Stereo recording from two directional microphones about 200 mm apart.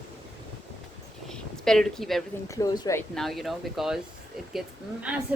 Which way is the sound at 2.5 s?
15° left (ahead or behind).